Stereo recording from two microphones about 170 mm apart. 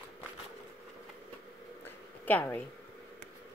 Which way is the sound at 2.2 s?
10° left (ahead or behind).